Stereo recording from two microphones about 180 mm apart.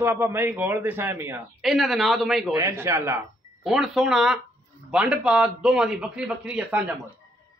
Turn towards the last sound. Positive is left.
turn(degrees=-5)  # may be behind; listen again after turning